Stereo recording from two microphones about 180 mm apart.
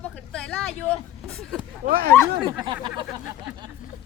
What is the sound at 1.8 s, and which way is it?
Speech, 60° right (ahead or behind).